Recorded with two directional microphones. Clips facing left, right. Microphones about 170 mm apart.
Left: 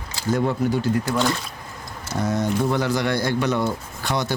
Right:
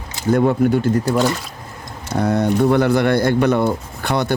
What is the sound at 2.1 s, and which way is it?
Speech, 60° right (ahead or behind).